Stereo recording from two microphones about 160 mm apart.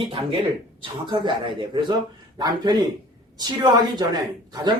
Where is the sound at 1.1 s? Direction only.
30° right (ahead or behind).